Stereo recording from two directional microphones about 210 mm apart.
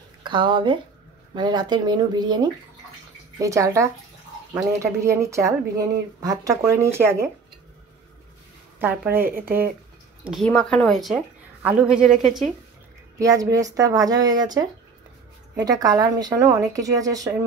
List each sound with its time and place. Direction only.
0.2 s speech: 20° right (ahead or behind)
8.7 s speech: 10° right (ahead or behind)
10.2 s a woman's voice: centre (ahead or behind)
13.2 s speech: 15° right (ahead or behind)